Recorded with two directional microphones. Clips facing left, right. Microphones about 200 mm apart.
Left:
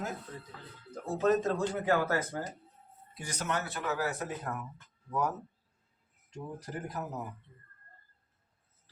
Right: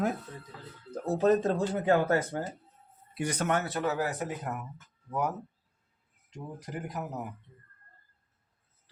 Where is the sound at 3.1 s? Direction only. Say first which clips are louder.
Right 7 dB; 65° right (ahead or behind).